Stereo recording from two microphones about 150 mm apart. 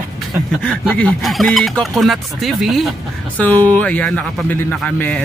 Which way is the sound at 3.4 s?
10° left (ahead or behind).